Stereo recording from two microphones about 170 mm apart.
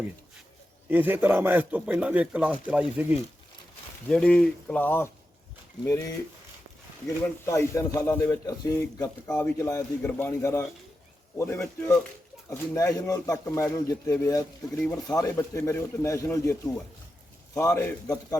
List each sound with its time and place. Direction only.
0.9 s a man's voice: 10° right (ahead or behind)
4.1 s a man's voice: 5° left (ahead or behind)
7.4 s a man's voice: 15° left (ahead or behind)
9.2 s a man's voice: 10° left (ahead or behind)
12.5 s a man's voice: 20° left (ahead or behind)
17.7 s a man's voice: 10° left (ahead or behind)